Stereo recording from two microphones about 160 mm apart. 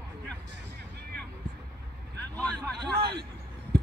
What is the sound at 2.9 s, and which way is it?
Vehicle, 90° right.